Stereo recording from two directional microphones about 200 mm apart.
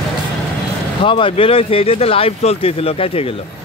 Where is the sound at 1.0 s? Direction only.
25° left (ahead or behind).